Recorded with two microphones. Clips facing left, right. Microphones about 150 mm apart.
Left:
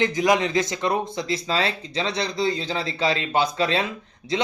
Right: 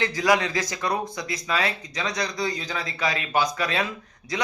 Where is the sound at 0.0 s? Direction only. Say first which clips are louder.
Left 2 dB; 20° left (ahead or behind).